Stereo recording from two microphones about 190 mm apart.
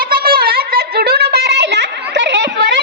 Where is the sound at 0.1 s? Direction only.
50° right (ahead or behind).